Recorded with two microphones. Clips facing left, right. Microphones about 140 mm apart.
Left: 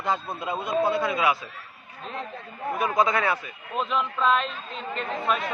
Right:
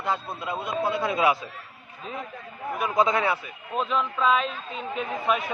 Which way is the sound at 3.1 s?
15° right (ahead or behind).